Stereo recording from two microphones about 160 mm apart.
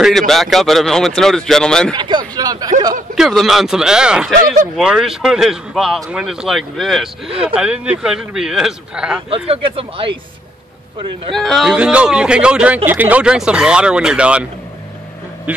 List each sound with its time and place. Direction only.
0.3 s speech: centre (ahead or behind)
2.0 s speech: 30° right (ahead or behind)
3.2 s speech: centre (ahead or behind)
9.5 s speech: 35° right (ahead or behind)
11.3 s speech: centre (ahead or behind)